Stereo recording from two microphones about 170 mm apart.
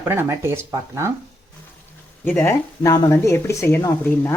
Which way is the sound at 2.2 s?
10° left (ahead or behind).